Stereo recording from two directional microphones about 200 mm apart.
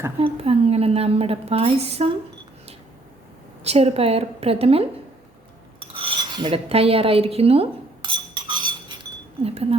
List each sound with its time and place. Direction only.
0.2 s a woman's voice: 30° right (ahead or behind)
3.6 s a woman's voice: 30° right (ahead or behind)
5.8 s filing: 25° right (ahead or behind)
8.1 s chink: 25° right (ahead or behind)
9.4 s a woman's voice: 30° right (ahead or behind)